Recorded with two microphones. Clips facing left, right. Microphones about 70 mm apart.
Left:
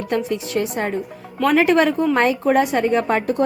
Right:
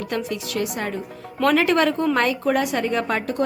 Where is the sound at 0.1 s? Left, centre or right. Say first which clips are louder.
Left 7 dB; left.